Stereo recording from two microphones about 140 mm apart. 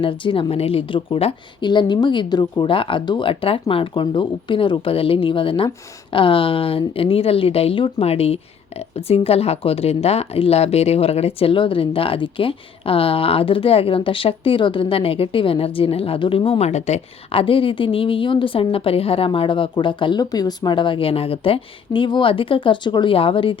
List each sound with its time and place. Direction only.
0.0 s speech: 40° left (ahead or behind)